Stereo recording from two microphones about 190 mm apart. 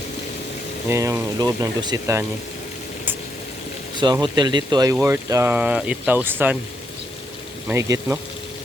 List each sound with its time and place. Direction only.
0.9 s speech: 15° right (ahead or behind)
3.9 s speech: 25° right (ahead or behind)
7.7 s speech: 15° right (ahead or behind)